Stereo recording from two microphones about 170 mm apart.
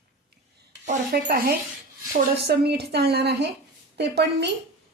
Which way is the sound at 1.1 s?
65° right (ahead or behind).